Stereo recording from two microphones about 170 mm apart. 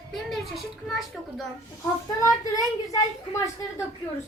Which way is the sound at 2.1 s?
20° left (ahead or behind).